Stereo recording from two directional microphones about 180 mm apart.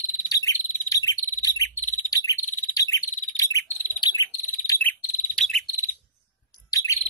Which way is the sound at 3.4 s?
20° left (ahead or behind).